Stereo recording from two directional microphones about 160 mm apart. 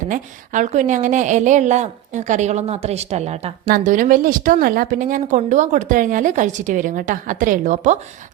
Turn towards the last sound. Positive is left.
turn(degrees=-50)  # may be behind; listen again after turning